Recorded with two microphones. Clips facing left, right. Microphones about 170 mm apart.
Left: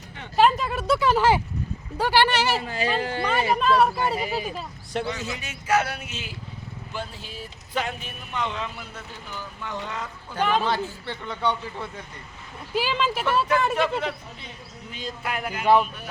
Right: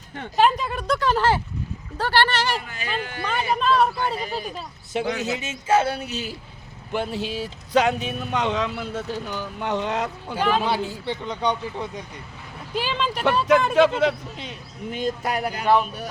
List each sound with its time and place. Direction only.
0.3 s speech: centre (ahead or behind)
2.6 s speech: 30° left (ahead or behind)
3.5 s speech: 10° left (ahead or behind)
5.2 s speech: 20° right (ahead or behind); by 6.3 s 40° right (ahead or behind)
6.9 s speech: 65° right (ahead or behind)
10.3 s speech: 10° right (ahead or behind)
12.7 s speech: 5° left (ahead or behind)
13.7 s speech: 90° right
14.8 s speech: 50° right (ahead or behind)
15.6 s speech: 10° left (ahead or behind)